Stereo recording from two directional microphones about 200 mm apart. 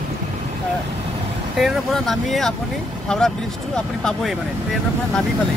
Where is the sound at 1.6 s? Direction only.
Centre (ahead or behind).